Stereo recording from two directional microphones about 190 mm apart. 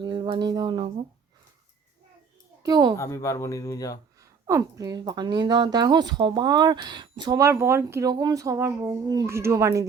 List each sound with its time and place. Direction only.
0.0 s speech: 25° right (ahead or behind)
2.6 s speech: 20° right (ahead or behind)
3.0 s speech: 15° left (ahead or behind)
4.2 s speech: 15° right (ahead or behind)